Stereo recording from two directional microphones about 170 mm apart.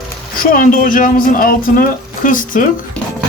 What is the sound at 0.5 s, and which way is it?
Speech, 55° left (ahead or behind).